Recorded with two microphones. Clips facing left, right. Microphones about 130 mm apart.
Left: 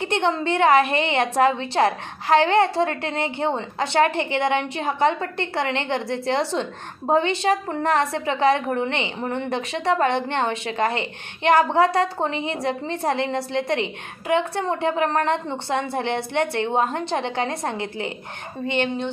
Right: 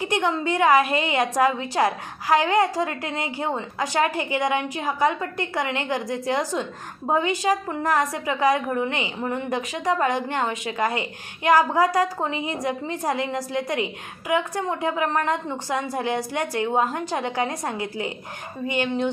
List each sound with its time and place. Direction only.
0.0 s a woman's voice: 25° left (ahead or behind)